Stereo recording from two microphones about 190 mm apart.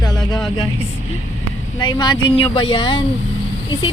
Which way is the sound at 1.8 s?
25° left (ahead or behind).